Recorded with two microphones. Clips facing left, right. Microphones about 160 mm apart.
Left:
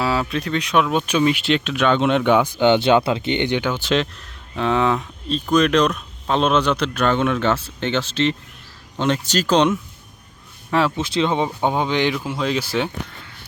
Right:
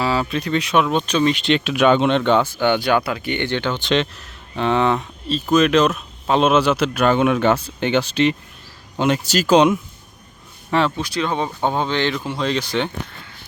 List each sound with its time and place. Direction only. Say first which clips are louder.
0.0 s speech: right 1 dB; centre (ahead or behind)
1.6 s speech: right 5 dB; 10° right (ahead or behind)
2.0 s speech: even; 10° left (ahead or behind); by 9.7 s 10° right (ahead or behind)
10.7 s speech: even; 5° left (ahead or behind)
10.9 s speech: left 2 dB; 20° left (ahead or behind); by 12.9 s 5° left (ahead or behind)